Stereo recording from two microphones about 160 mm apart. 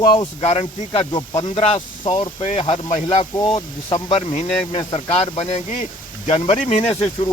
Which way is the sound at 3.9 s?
40° left (ahead or behind).